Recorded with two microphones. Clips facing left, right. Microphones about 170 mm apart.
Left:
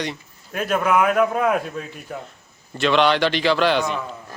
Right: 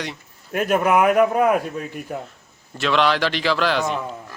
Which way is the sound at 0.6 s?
15° right (ahead or behind).